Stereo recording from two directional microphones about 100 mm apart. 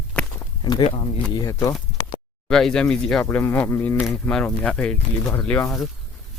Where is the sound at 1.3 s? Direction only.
40° left (ahead or behind).